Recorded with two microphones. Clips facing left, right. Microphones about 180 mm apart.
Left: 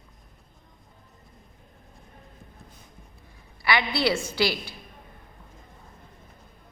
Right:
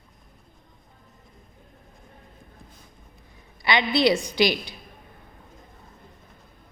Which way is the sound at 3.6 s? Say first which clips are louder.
Right 4 dB; 20° right (ahead or behind).